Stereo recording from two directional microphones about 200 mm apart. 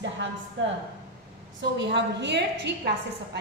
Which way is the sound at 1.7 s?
60° right (ahead or behind).